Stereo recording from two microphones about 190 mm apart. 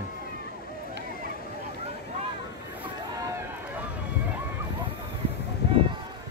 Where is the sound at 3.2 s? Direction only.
15° right (ahead or behind).